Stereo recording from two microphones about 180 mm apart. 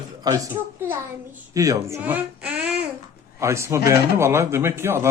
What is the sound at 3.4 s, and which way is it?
Speech, 15° right (ahead or behind).